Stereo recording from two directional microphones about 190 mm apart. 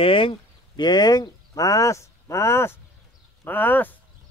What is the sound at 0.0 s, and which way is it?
Speech, 30° left (ahead or behind).